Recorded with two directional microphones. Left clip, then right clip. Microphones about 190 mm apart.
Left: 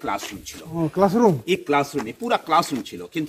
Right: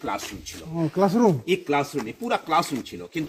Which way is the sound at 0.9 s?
45° right (ahead or behind).